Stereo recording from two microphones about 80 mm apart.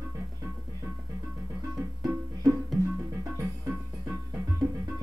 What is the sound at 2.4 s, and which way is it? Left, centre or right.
Music, right.